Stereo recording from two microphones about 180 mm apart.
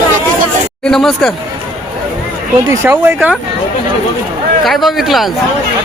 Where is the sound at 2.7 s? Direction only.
10° right (ahead or behind).